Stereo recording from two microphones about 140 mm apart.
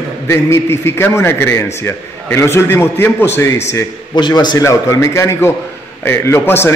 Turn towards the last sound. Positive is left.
turn(degrees=15)  # may be behind; listen again after turning